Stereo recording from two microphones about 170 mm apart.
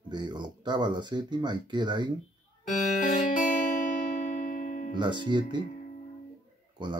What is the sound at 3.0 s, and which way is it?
Music, 50° left (ahead or behind).